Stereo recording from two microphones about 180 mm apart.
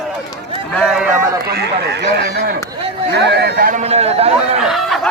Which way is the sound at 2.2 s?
60° right (ahead or behind).